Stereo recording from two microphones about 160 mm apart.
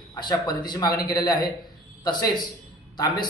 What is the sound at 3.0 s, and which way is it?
Speech, 25° left (ahead or behind).